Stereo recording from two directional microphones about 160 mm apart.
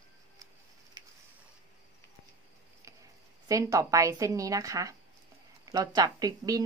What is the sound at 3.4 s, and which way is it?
A woman's voice, 20° right (ahead or behind).